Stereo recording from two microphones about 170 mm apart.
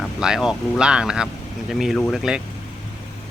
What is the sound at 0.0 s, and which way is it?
Speech, centre (ahead or behind).